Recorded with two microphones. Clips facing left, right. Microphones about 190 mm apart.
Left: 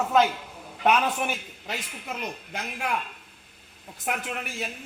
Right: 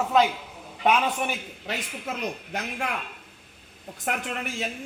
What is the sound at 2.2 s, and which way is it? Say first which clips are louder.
Speech: right 3 dB; 65° right (ahead or behind).